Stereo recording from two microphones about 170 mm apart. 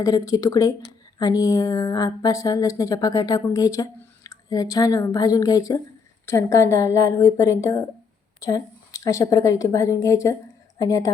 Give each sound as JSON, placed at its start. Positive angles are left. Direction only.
{"t": 0.0, "sound": "a woman's voice", "side_deg": 20}